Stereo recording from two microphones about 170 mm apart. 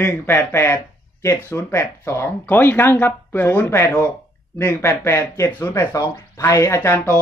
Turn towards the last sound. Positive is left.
turn(degrees=15)  # may be behind; listen again after turning